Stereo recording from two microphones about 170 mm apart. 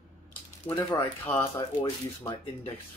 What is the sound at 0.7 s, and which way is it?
Speech, 10° left (ahead or behind).